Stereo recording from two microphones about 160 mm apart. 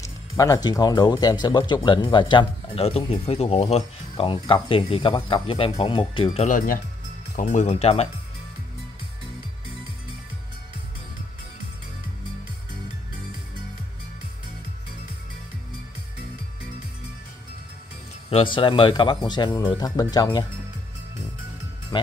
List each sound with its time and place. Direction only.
0.0 s speech: 20° left (ahead or behind)
6.4 s speech: 60° left (ahead or behind)
7.3 s speech: 45° left (ahead or behind)
18.3 s speech: 30° left (ahead or behind)
21.9 s speech: 30° left (ahead or behind)